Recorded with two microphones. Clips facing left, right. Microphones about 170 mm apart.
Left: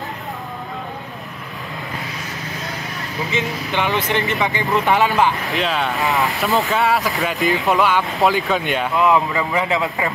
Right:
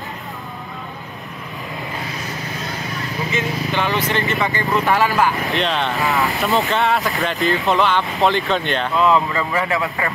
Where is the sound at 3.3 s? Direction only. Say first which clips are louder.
Even; 15° left (ahead or behind).